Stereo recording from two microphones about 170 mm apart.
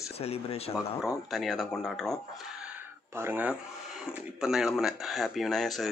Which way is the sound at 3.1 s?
15° right (ahead or behind).